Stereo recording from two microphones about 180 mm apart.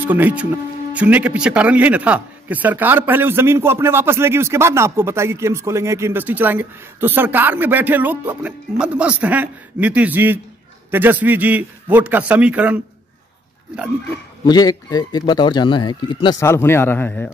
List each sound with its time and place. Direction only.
0.0 s speech: 10° right (ahead or behind)
14.4 s a man's voice: 20° left (ahead or behind)
16.3 s a man's voice: 15° left (ahead or behind)